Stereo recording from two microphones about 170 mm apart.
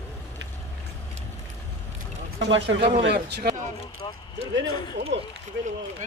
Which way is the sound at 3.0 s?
75° right (ahead or behind).